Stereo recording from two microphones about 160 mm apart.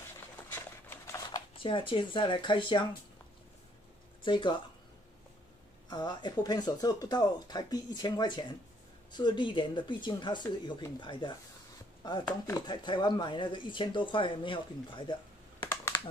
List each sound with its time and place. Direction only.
0.5 s a sound: 15° left (ahead or behind)
1.3 s speech: 30° left (ahead or behind)
4.2 s speech: 30° left (ahead or behind)
5.9 s speech: 30° left (ahead or behind)